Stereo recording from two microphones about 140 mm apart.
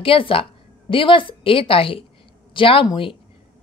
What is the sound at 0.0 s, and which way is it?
A woman's voice, 40° left (ahead or behind).